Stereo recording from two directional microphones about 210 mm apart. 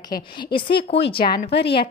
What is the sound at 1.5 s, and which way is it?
Speech, 55° left (ahead or behind).